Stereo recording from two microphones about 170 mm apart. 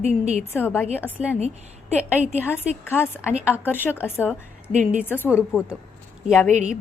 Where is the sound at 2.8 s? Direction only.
15° left (ahead or behind).